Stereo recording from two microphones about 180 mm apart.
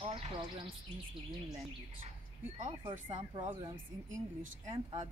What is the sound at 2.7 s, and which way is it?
Speech, 30° right (ahead or behind).